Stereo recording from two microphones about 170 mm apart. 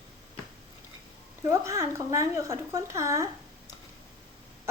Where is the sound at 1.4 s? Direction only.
20° right (ahead or behind).